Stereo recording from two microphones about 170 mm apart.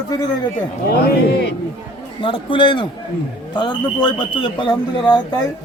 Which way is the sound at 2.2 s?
30° left (ahead or behind).